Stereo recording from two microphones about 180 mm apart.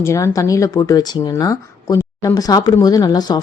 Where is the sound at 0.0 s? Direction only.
15° left (ahead or behind).